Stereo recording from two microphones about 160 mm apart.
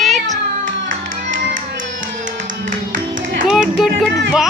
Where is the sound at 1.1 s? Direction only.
55° right (ahead or behind).